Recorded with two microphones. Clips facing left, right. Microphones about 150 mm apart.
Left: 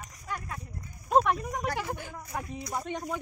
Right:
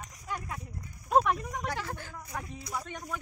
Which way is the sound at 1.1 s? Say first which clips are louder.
Left 1 dB; centre (ahead or behind).